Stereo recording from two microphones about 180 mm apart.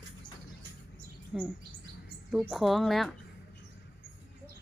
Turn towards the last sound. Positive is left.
turn(degrees=0)  # may be behind; listen again after turning